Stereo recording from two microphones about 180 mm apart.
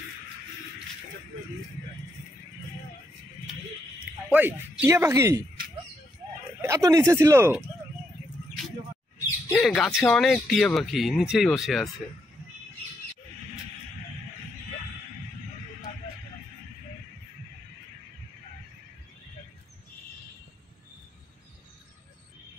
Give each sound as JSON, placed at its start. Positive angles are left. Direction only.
{"t": 4.3, "sound": "speech", "side_deg": -10}
{"t": 6.6, "sound": "speech", "side_deg": -15}
{"t": 9.5, "sound": "speech", "side_deg": 5}